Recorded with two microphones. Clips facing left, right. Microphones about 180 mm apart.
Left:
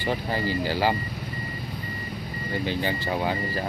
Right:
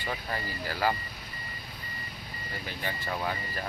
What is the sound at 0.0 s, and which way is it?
Speech, 30° left (ahead or behind).